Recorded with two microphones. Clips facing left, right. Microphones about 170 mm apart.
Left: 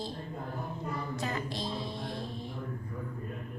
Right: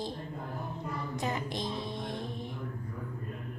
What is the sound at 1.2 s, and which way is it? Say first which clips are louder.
Speech: right 1 dB; 20° right (ahead or behind).